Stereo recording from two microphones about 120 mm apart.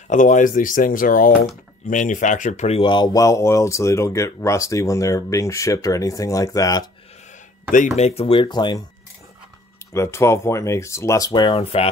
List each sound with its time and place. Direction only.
0.1 s speech: 90° left; by 2.8 s 75° left (ahead or behind)
2.8 s speech: 40° left (ahead or behind)
7.7 s speech: 80° left; by 8.8 s 35° left (ahead or behind)
9.9 s speech: 25° left (ahead or behind)
11.3 s speech: 50° left (ahead or behind)